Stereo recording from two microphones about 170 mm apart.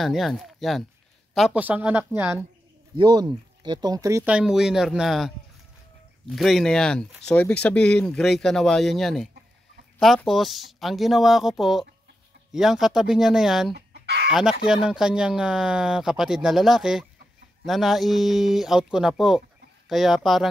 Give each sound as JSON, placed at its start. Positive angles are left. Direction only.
{"t": 0.0, "sound": "speech", "side_deg": 0}
{"t": 3.0, "sound": "speech", "side_deg": -25}
{"t": 4.2, "sound": "speech", "side_deg": -5}
{"t": 13.7, "sound": "chicken", "side_deg": -80}
{"t": 14.3, "sound": "speech", "side_deg": -5}